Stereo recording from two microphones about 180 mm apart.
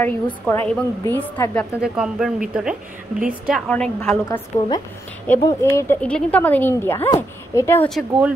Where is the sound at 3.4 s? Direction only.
Centre (ahead or behind).